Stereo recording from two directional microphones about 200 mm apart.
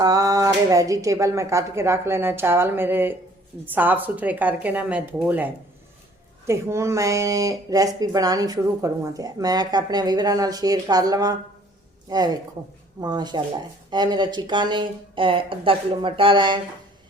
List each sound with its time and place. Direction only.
0.0 s speech: 15° right (ahead or behind)
6.5 s speech: 15° right (ahead or behind)